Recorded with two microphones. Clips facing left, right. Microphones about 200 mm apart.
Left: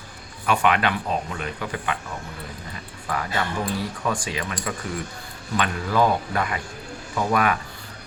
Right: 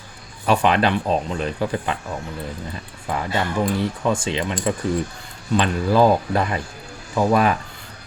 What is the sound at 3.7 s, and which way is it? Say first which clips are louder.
Speech: right 5 dB; 25° right (ahead or behind).